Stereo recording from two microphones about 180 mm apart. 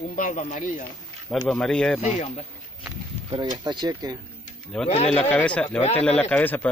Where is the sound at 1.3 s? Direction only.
Centre (ahead or behind).